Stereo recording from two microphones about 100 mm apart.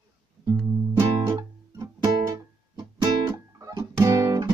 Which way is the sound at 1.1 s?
35° right (ahead or behind).